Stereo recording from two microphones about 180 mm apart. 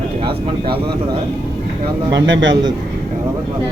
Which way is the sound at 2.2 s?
90° right.